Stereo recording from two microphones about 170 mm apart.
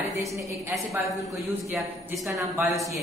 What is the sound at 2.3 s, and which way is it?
Speech, 15° right (ahead or behind).